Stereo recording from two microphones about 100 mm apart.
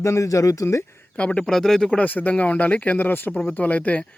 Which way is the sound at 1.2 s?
10° left (ahead or behind).